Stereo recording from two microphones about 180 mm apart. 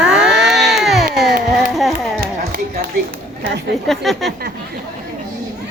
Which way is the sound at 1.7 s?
Centre (ahead or behind).